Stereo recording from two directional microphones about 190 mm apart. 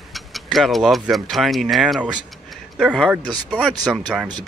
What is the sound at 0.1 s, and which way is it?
Speech, centre (ahead or behind).